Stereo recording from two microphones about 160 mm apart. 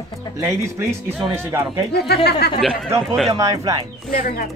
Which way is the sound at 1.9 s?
90° left.